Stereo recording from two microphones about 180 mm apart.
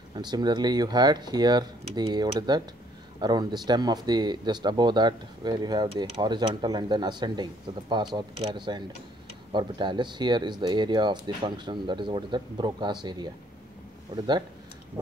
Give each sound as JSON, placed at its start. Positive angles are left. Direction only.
{"t": 0.1, "sound": "speech", "side_deg": -25}